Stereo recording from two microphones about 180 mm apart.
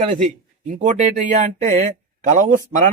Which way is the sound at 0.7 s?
45° right (ahead or behind).